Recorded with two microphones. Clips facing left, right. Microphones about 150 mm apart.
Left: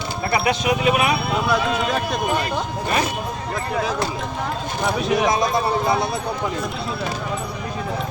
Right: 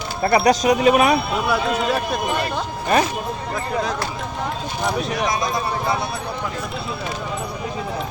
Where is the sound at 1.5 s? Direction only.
10° right (ahead or behind).